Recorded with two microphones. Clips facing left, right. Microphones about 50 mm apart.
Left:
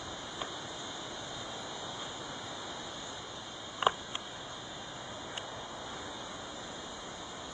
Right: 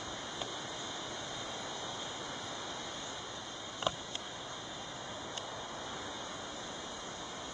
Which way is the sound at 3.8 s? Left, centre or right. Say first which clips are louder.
Left 7 dB; left.